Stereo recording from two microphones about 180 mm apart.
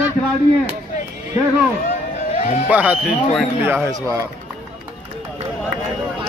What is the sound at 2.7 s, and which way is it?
Speech, 5° right (ahead or behind).